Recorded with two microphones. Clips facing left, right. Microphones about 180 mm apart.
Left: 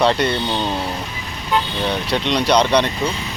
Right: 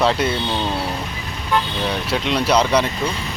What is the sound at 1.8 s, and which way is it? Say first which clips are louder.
Speech: left 1 dB; 5° right (ahead or behind).